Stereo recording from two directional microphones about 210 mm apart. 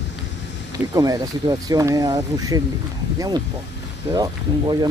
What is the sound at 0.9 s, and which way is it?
Speech, 15° right (ahead or behind).